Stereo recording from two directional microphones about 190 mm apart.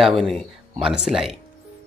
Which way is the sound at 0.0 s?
Centre (ahead or behind).